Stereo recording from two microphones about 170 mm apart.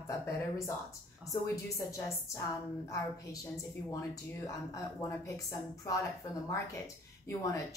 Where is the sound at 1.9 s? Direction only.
15° left (ahead or behind).